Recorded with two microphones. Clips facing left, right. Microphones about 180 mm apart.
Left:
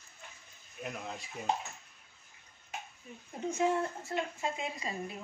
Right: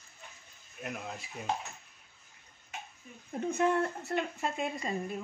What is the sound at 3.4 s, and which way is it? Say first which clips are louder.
Speech: right 2 dB; 60° right (ahead or behind).